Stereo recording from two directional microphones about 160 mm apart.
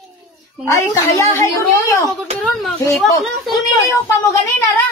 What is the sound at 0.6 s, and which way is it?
A woman's voice, 20° left (ahead or behind).